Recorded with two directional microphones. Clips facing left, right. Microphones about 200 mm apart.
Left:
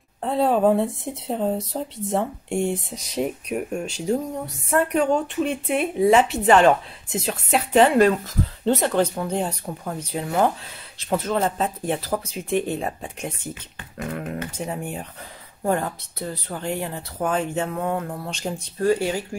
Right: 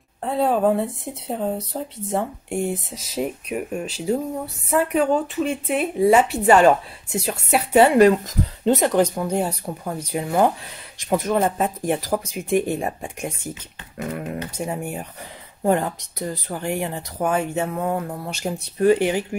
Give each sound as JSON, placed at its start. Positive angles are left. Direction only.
{"t": 0.2, "sound": "speech", "side_deg": 0}